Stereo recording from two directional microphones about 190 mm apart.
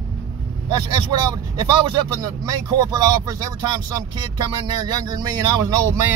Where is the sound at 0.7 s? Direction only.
20° right (ahead or behind).